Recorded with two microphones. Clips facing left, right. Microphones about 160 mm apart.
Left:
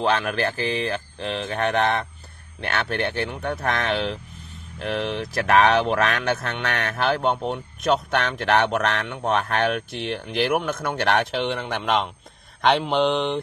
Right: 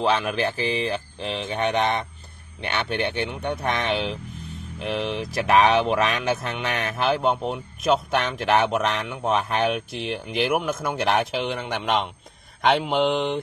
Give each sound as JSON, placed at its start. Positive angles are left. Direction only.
{"t": 0.0, "sound": "speech", "side_deg": 0}